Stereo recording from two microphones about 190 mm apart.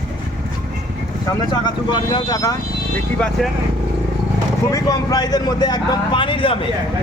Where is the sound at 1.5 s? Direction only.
25° left (ahead or behind).